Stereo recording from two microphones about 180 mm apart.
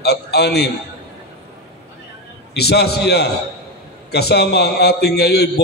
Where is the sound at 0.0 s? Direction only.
65° left (ahead or behind).